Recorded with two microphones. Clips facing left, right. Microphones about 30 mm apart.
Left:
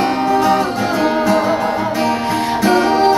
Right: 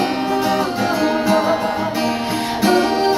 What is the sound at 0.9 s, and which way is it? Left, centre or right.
Music, left.